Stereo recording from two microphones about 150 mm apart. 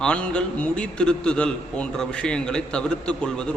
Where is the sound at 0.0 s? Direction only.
5° left (ahead or behind).